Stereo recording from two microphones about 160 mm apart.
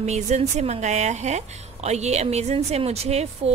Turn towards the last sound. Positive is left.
turn(degrees=-40)  # may be behind; listen again after turning